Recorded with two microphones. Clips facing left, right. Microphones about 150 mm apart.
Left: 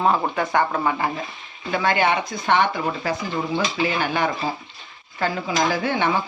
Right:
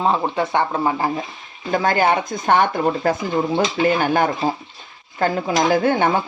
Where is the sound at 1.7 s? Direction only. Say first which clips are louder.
Right 3 dB; 40° right (ahead or behind).